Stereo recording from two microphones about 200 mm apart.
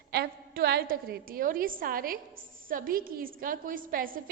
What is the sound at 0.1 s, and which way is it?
A woman's voice, 50° right (ahead or behind).